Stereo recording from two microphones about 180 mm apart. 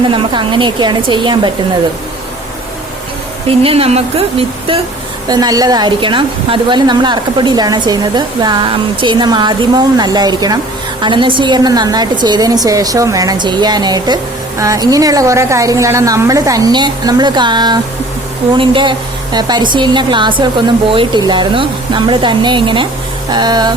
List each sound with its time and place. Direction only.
0.1 s speech: 25° right (ahead or behind)
3.5 s speech: 30° right (ahead or behind)
5.3 s speech: 20° right (ahead or behind)